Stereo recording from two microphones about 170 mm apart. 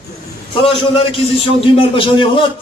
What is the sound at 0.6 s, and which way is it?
A man's voice, 30° left (ahead or behind).